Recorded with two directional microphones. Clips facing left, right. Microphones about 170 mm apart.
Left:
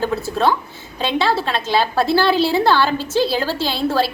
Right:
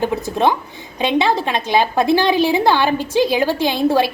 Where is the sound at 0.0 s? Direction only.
15° right (ahead or behind).